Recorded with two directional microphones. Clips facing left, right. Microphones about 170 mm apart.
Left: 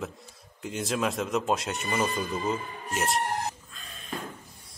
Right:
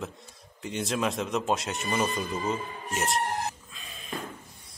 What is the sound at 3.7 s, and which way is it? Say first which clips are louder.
Music: left 1 dB; centre (ahead or behind).